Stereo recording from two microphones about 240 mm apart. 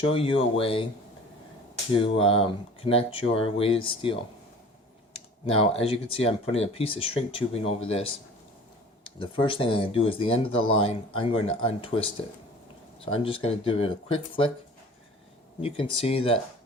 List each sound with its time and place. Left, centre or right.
0.0 s speech: left
1.9 s speech: left
5.5 s speech: left
9.0 s speech: left
13.1 s speech: left
15.6 s speech: left